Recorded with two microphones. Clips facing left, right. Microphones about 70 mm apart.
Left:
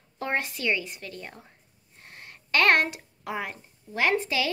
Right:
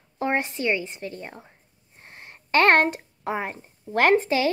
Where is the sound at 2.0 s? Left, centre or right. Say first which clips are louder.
Right 2 dB; right.